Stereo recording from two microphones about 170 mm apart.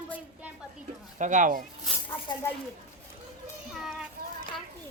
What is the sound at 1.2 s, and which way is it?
Speech, 50° right (ahead or behind).